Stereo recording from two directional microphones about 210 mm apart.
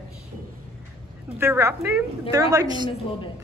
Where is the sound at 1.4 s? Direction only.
10° right (ahead or behind).